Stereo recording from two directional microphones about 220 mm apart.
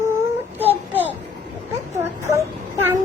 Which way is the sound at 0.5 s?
10° right (ahead or behind).